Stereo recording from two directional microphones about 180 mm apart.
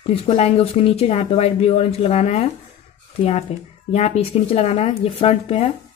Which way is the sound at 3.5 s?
35° left (ahead or behind).